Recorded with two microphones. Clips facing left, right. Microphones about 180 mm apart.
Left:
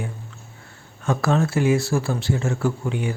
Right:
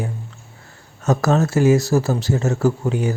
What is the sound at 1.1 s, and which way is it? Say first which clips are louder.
A man's voice: right 3 dB; 40° right (ahead or behind).